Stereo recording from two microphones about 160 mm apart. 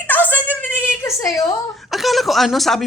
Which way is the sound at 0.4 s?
10° right (ahead or behind).